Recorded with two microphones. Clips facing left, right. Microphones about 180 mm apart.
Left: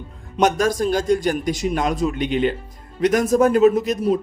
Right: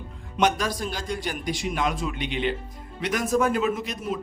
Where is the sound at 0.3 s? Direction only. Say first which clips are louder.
Left 6 dB; 45° left (ahead or behind).